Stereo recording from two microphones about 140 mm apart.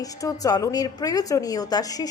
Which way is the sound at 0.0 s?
25° left (ahead or behind).